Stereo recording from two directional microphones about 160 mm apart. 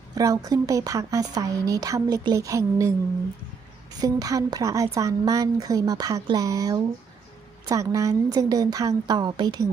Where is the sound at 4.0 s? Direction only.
20° right (ahead or behind).